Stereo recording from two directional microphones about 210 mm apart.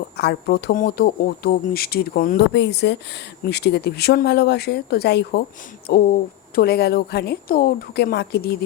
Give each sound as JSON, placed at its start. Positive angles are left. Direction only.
{"t": 0.2, "sound": "speech", "side_deg": 50}